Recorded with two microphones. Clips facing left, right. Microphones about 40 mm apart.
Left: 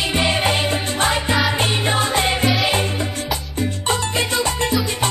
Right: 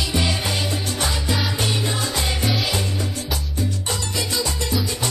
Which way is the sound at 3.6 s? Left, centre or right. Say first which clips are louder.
Left 6 dB; left.